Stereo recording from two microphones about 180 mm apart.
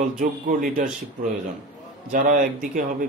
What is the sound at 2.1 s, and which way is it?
Speech, 45° right (ahead or behind).